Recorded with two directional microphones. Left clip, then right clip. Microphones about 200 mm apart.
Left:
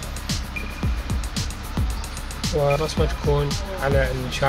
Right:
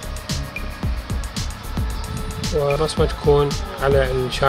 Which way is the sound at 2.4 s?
Centre (ahead or behind).